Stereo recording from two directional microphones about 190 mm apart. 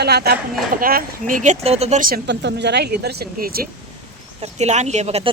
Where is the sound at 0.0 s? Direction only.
60° right (ahead or behind).